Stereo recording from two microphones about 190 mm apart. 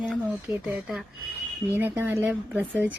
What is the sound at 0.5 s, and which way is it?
Speech, 5° right (ahead or behind).